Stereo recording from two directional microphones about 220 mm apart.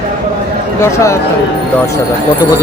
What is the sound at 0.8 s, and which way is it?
Speech, 10° left (ahead or behind).